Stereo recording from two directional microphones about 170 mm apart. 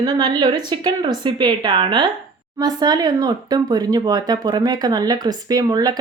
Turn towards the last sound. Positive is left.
turn(degrees=-25)  # may be behind; listen again after turning